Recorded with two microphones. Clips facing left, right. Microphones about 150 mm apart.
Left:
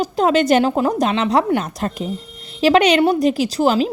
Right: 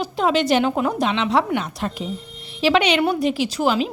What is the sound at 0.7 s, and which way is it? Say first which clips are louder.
A woman's voice: left 3 dB; 35° left (ahead or behind).